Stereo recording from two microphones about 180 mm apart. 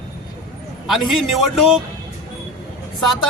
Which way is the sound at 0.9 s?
Centre (ahead or behind).